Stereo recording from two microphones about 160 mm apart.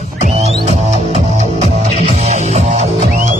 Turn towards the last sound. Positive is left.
turn(degrees=-45)  # may be behind; listen again after turning